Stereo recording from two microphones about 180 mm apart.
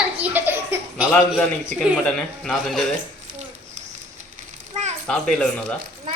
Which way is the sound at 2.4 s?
Centre (ahead or behind).